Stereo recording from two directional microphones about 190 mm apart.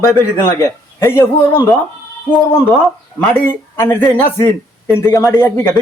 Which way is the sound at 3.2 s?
10° left (ahead or behind).